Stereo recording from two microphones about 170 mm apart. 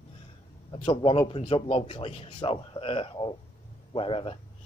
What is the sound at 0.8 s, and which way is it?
Speech, 30° left (ahead or behind).